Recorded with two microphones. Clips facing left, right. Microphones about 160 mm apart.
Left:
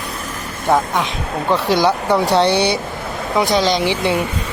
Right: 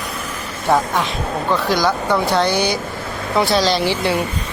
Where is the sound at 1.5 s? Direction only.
30° left (ahead or behind).